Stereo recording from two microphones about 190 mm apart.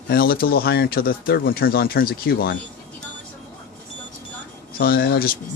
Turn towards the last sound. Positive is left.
turn(degrees=55)  # may be behind; listen again after turning